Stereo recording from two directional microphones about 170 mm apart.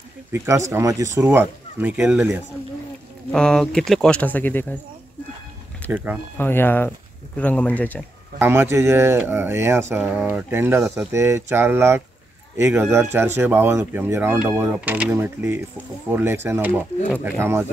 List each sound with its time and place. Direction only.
0.3 s speech: 15° right (ahead or behind)
3.3 s speech: 5° left (ahead or behind)
5.9 s speech: 10° right (ahead or behind)
6.3 s speech: 10° left (ahead or behind)
8.4 s speech: 15° right (ahead or behind)